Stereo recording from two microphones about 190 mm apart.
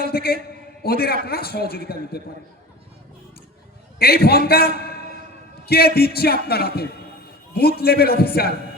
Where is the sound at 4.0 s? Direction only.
55° left (ahead or behind).